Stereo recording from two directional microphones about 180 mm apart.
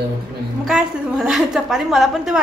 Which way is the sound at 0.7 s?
5° right (ahead or behind).